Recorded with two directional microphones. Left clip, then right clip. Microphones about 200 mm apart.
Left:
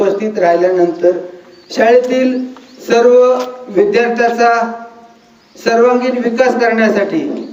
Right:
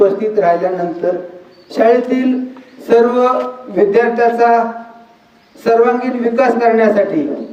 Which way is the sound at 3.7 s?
20° right (ahead or behind).